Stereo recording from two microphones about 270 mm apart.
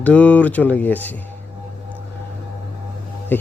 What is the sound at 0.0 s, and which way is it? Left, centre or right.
Speech, centre.